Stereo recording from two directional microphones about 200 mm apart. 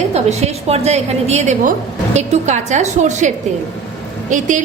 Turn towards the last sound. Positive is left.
turn(degrees=-40)  # may be behind; listen again after turning